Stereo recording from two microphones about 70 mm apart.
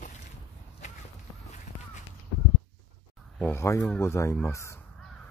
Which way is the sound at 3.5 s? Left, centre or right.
Left.